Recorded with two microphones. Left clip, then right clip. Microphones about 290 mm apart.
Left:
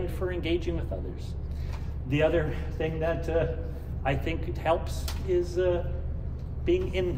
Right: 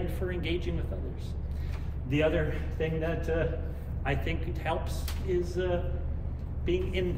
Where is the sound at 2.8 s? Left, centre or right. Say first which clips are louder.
Left 3 dB; centre.